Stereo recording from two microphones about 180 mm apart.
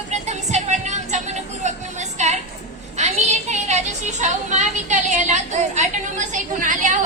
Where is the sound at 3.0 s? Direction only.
40° right (ahead or behind).